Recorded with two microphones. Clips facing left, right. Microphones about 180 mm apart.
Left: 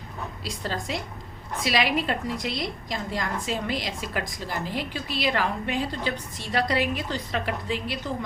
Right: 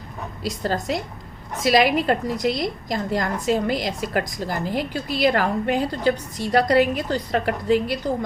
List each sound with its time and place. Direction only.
0.4 s a woman's voice: 40° right (ahead or behind)